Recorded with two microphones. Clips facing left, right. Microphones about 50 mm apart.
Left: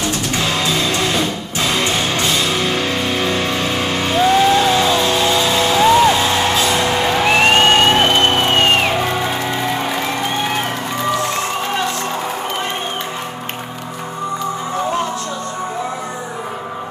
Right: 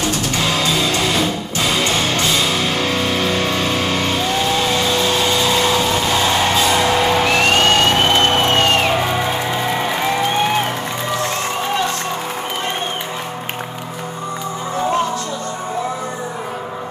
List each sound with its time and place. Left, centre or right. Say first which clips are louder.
0.0 s music: even; centre
7.2 s music: left 2 dB; left
9.5 s music: even; centre